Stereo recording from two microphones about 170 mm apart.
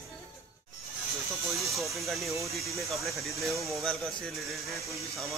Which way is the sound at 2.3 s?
20° right (ahead or behind).